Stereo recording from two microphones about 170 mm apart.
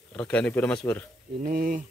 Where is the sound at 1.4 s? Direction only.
50° right (ahead or behind).